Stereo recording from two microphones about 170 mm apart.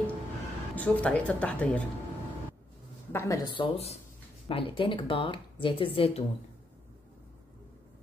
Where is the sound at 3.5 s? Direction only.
35° left (ahead or behind).